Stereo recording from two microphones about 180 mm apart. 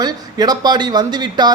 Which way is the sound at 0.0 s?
20° right (ahead or behind).